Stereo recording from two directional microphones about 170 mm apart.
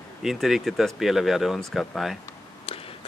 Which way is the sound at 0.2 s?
Centre (ahead or behind).